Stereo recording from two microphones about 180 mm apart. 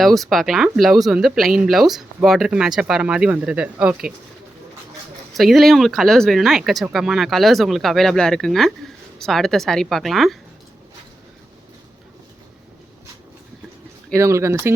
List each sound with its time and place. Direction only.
0.0 s speech: centre (ahead or behind)
5.3 s speech: centre (ahead or behind)
14.1 s speech: 15° right (ahead or behind)